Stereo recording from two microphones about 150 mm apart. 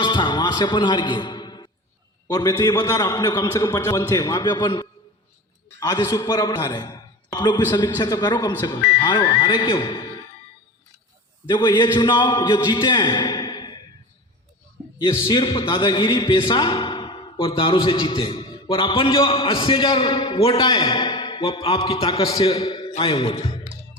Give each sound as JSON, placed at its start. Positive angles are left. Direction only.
{"t": 0.0, "sound": "music", "side_deg": 30}
{"t": 2.2, "sound": "a man's voice", "side_deg": 25}
{"t": 11.4, "sound": "a man's voice", "side_deg": 30}
{"t": 14.9, "sound": "a man's voice", "side_deg": 30}
{"t": 20.7, "sound": "a man's voice", "side_deg": 25}